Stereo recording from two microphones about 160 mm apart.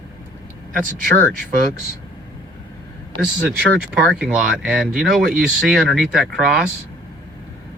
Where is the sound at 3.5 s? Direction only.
80° right.